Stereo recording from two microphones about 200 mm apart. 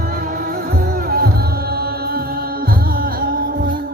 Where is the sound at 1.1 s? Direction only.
50° right (ahead or behind).